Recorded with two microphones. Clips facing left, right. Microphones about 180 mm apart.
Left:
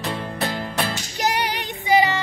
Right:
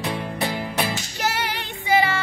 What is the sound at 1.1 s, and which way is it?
Child singing, 15° left (ahead or behind).